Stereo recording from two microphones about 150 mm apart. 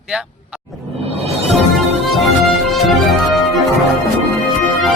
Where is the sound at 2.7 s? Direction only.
Centre (ahead or behind).